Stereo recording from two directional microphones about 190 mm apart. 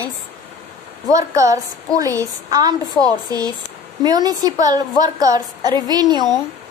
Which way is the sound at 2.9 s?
20° left (ahead or behind).